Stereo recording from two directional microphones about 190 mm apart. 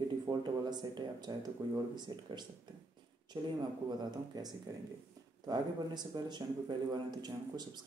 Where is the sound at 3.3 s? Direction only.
20° right (ahead or behind).